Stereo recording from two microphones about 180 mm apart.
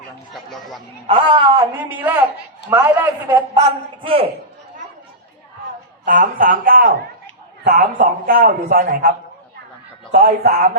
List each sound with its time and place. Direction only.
0.5 s a sound: centre (ahead or behind)
1.0 s a man's voice: 25° right (ahead or behind)
1.8 s a man's voice: 10° right (ahead or behind)
4.0 s a man's voice: 30° right (ahead or behind)
6.1 s a man's voice: 50° right (ahead or behind)